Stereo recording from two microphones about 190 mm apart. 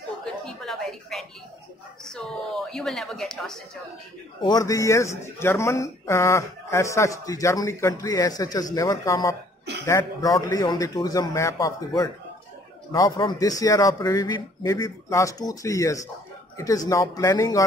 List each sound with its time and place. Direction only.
0.2 s a sound: centre (ahead or behind)
2.1 s speech: centre (ahead or behind)
4.4 s speech: 20° left (ahead or behind)